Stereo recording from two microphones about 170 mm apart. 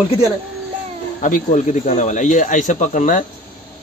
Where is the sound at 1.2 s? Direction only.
50° left (ahead or behind).